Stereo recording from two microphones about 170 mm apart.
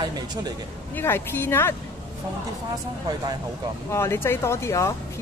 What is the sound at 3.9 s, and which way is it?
Speech, 15° left (ahead or behind).